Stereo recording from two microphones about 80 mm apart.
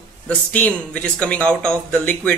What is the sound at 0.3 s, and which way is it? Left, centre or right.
A man's voice, centre.